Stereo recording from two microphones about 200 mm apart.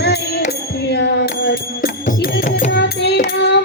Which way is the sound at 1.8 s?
45° left (ahead or behind).